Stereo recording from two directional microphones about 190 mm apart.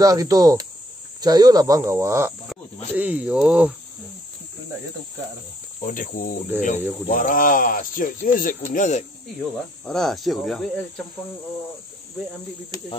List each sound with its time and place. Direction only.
0.0 s speech: 20° right (ahead or behind)
5.8 s speech: 45° left (ahead or behind)
6.5 s speech: 10° right (ahead or behind)
7.1 s speech: 45° left (ahead or behind)
9.4 s speech: centre (ahead or behind)